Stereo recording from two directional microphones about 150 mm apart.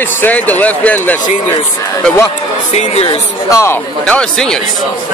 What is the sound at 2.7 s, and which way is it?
Speech, 45° left (ahead or behind).